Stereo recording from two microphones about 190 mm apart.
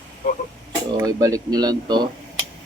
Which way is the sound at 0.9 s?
20° right (ahead or behind).